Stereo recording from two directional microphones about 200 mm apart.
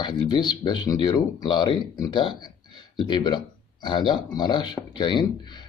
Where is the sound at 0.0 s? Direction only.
20° left (ahead or behind).